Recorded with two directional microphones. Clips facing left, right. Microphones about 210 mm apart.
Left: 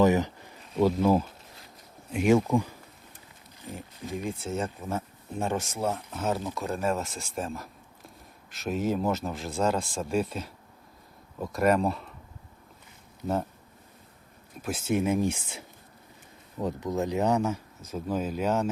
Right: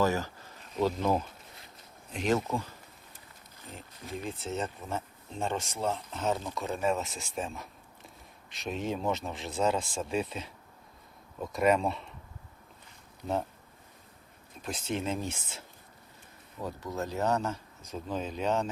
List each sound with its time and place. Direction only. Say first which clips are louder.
0.0 s a sound: left 6 dB; 20° left (ahead or behind)
0.7 s speech: left 5 dB; 10° left (ahead or behind)
4.4 s a man's voice: left 3 dB; centre (ahead or behind)
14.6 s speech: left 6 dB; 10° left (ahead or behind)